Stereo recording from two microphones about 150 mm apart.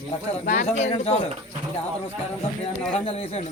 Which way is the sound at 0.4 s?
70° left (ahead or behind).